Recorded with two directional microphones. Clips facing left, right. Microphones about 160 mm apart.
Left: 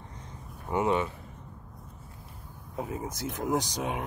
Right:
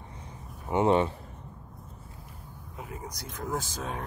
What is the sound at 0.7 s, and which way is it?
Speech, 30° right (ahead or behind).